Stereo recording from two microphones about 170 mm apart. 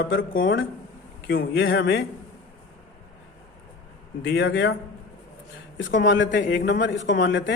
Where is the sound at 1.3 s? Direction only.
70° left (ahead or behind).